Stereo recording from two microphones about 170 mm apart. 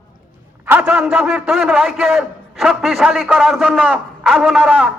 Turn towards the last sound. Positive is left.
turn(degrees=-5)  # may be behind; listen again after turning